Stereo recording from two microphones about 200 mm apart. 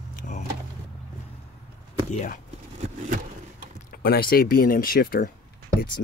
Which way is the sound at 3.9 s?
50° left (ahead or behind).